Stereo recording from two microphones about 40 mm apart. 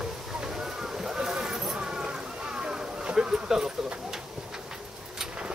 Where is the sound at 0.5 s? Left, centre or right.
Centre.